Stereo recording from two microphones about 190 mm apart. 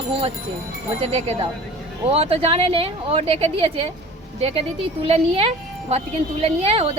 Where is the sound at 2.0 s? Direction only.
30° right (ahead or behind).